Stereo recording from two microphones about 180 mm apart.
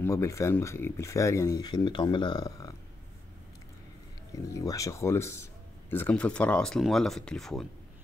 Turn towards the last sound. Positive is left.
turn(degrees=0)  # may be behind; listen again after turning